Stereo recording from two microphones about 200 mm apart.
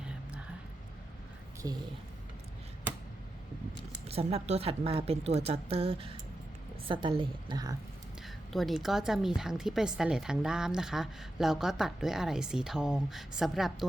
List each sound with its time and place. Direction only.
1.6 s speech: 20° right (ahead or behind)
4.0 s speech: 30° right (ahead or behind)
8.2 s a woman's voice: centre (ahead or behind)